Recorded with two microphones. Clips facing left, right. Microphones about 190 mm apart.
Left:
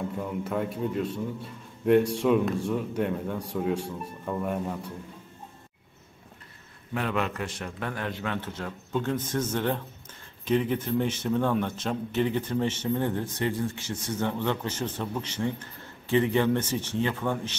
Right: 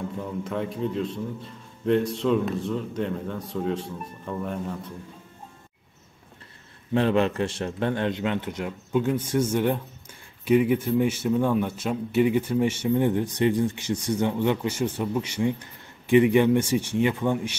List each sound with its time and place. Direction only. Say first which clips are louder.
0.4 s a man's voice: right 1 dB; 5° left (ahead or behind)
6.9 s a man's voice: right 7 dB; 30° right (ahead or behind)